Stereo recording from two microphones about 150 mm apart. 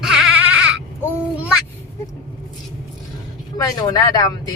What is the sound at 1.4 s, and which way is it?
Speech, 5° right (ahead or behind).